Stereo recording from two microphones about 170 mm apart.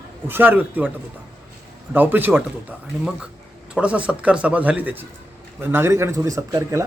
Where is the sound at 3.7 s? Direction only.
5° right (ahead or behind).